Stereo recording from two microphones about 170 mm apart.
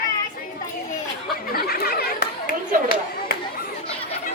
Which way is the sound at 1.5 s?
60° left (ahead or behind).